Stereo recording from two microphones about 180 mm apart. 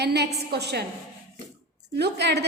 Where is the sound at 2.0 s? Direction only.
70° right (ahead or behind).